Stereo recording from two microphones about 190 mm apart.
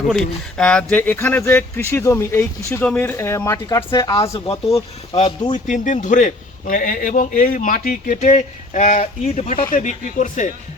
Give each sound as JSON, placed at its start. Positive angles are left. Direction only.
{"t": 0.1, "sound": "speech", "side_deg": 5}
{"t": 5.5, "sound": "a man's voice", "side_deg": 40}